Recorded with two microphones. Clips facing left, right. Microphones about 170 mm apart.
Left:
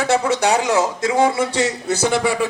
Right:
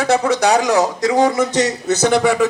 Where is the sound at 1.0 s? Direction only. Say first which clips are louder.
Right 2 dB; 40° right (ahead or behind).